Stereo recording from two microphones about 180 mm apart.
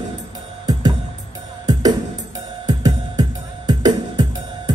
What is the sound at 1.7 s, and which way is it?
Music, 20° right (ahead or behind).